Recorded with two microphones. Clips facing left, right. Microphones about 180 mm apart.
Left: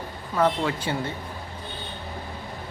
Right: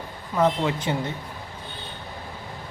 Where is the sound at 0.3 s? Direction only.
20° right (ahead or behind).